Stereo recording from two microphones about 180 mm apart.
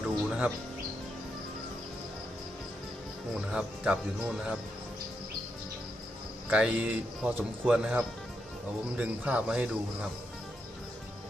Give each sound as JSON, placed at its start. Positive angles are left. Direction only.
{"t": 0.0, "sound": "music", "side_deg": -5}
{"t": 3.3, "sound": "speech", "side_deg": -5}
{"t": 6.5, "sound": "speech", "side_deg": -5}